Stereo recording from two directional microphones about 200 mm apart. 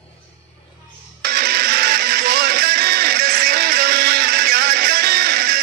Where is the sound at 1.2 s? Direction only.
50° right (ahead or behind).